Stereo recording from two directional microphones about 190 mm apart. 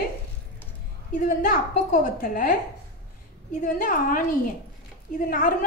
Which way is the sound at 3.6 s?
45° left (ahead or behind).